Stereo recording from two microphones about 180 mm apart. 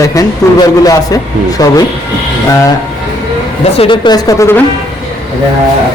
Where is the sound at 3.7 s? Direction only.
30° left (ahead or behind).